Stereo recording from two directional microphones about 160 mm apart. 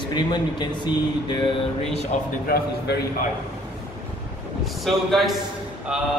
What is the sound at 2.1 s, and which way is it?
Speech, 50° left (ahead or behind).